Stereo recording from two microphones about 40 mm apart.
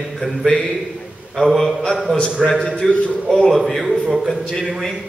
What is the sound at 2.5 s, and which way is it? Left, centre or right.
A man's voice, centre.